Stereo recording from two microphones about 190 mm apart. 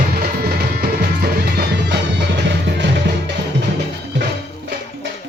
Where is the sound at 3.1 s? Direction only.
65° right (ahead or behind).